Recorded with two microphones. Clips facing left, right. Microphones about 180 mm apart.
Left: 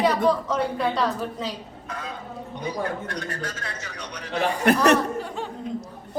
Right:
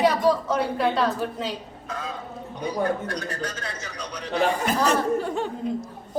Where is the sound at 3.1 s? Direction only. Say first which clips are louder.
Right 1 dB; 35° right (ahead or behind).